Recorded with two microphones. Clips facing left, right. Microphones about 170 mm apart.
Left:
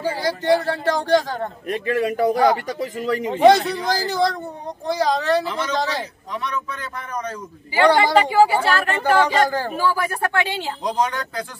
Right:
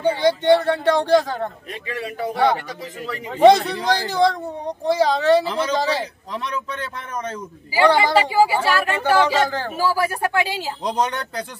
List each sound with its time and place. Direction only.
0.0 s a child's voice: centre (ahead or behind)
1.7 s speech: 45° left (ahead or behind)
3.3 s a child's voice: centre (ahead or behind)
7.7 s speech: 5° right (ahead or behind)